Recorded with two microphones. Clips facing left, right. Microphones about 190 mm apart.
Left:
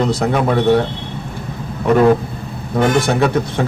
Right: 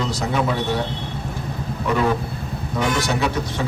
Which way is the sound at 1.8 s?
50° left (ahead or behind).